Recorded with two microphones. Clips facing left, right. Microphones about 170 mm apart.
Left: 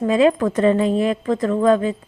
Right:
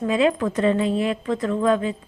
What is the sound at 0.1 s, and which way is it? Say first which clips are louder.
A woman's voice: left 4 dB; 40° left (ahead or behind).